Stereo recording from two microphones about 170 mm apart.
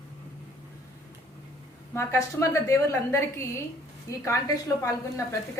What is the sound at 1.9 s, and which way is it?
A woman's voice, 15° left (ahead or behind).